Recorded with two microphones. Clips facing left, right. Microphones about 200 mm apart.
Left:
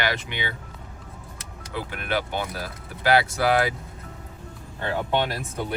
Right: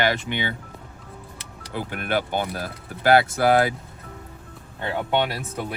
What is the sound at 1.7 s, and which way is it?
Speech, 50° right (ahead or behind).